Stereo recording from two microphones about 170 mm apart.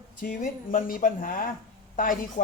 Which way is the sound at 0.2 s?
50° left (ahead or behind).